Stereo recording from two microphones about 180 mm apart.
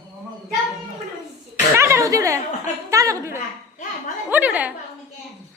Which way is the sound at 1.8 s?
15° right (ahead or behind).